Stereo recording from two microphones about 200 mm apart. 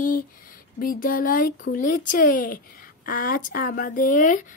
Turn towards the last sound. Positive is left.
turn(degrees=40)  # may be behind; listen again after turning